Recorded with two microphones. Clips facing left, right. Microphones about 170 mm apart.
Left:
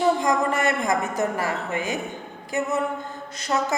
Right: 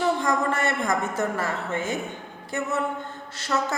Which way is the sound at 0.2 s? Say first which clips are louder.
Left 2 dB; 15° left (ahead or behind).